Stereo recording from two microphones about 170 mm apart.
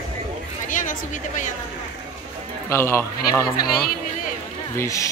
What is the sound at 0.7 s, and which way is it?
Speech, 50° left (ahead or behind).